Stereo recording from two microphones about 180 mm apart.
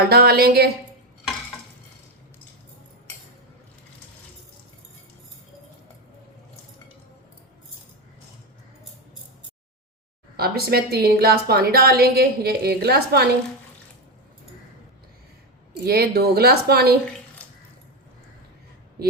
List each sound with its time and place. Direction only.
0.0 s a woman's voice: 60° right (ahead or behind)
10.3 s a woman's voice: 60° right (ahead or behind)
15.8 s a woman's voice: 60° right (ahead or behind)
17.4 s water: 10° left (ahead or behind)